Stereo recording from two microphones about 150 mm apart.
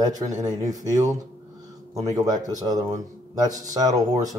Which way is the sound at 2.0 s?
25° right (ahead or behind).